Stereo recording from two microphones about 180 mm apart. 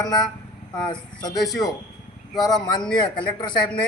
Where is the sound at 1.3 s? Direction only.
Centre (ahead or behind).